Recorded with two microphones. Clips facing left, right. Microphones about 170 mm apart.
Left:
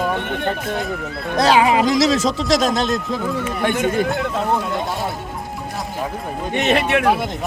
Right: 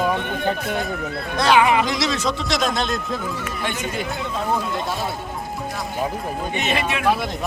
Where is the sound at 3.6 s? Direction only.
55° left (ahead or behind).